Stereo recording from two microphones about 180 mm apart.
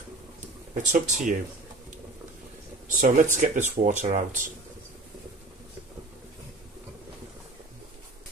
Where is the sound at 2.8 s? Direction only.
45° right (ahead or behind).